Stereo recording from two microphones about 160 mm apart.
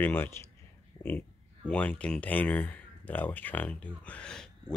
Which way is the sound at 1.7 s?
10° left (ahead or behind).